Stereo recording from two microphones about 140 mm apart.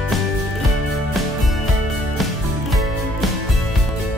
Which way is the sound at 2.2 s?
Centre (ahead or behind).